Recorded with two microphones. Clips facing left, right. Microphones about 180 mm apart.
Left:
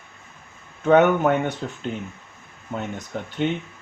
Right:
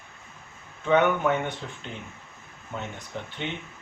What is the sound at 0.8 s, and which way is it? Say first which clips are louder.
Speech: left 6 dB; 45° left (ahead or behind).